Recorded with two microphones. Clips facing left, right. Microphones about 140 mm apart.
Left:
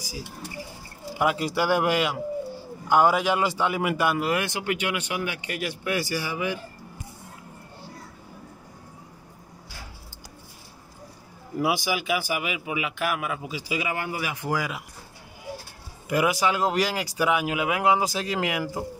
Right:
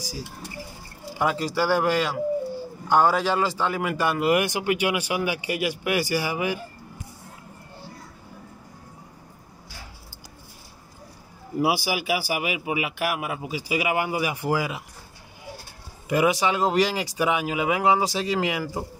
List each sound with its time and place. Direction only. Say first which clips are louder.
1.1 s a man's voice: even; 10° left (ahead or behind)
4.3 s speech: right 4 dB; 10° right (ahead or behind)
11.6 s speech: right 1 dB; 5° right (ahead or behind)
12.4 s a man's voice: right 3 dB; 50° right (ahead or behind)
13.9 s speech: right 5 dB; 15° right (ahead or behind)
16.1 s speech: right 2 dB; centre (ahead or behind)